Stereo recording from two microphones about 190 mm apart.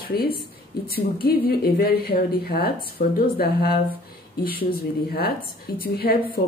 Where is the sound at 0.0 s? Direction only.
50° left (ahead or behind).